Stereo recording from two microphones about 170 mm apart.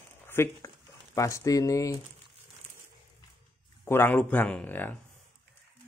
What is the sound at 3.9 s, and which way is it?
Speech, 10° left (ahead or behind).